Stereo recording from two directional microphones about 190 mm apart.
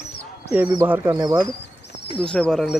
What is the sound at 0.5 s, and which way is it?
Speech, 10° right (ahead or behind).